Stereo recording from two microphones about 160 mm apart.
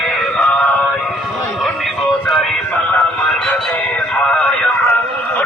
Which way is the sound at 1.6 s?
5° left (ahead or behind).